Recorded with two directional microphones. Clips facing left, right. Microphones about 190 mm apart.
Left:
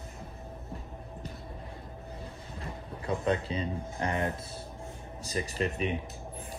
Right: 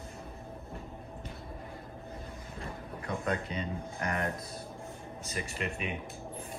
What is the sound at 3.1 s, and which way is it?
Speech, 30° left (ahead or behind).